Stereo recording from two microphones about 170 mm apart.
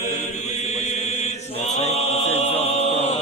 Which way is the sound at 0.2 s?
40° left (ahead or behind).